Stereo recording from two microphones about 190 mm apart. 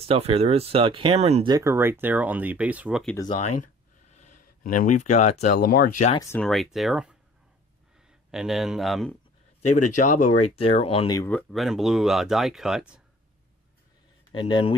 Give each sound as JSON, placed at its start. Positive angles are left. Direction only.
{"t": 0.0, "sound": "speech", "side_deg": -30}
{"t": 1.5, "sound": "speech", "side_deg": -15}
{"t": 4.6, "sound": "speech", "side_deg": 45}
{"t": 6.4, "sound": "speech", "side_deg": 0}
{"t": 8.3, "sound": "speech", "side_deg": -5}
{"t": 9.9, "sound": "speech", "side_deg": 40}
{"t": 10.6, "sound": "speech", "side_deg": 30}
{"t": 11.2, "sound": "speech", "side_deg": 0}
{"t": 14.3, "sound": "speech", "side_deg": 25}